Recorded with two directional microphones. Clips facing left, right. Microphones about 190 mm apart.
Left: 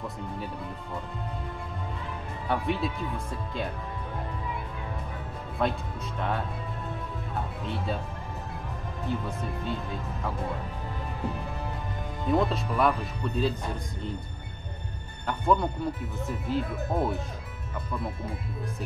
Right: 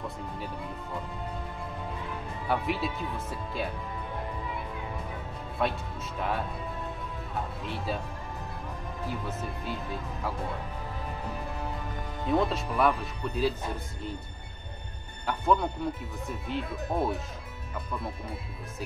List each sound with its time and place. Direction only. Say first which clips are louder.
2.4 s speech: left 1 dB; 5° right (ahead or behind)
5.6 s speech: left 2 dB; 5° right (ahead or behind)
7.6 s speech: left 2 dB; centre (ahead or behind)
9.0 s speech: left 3 dB; 5° right (ahead or behind)
12.3 s speech: left 1 dB; centre (ahead or behind)
15.2 s speech: left 1 dB; centre (ahead or behind)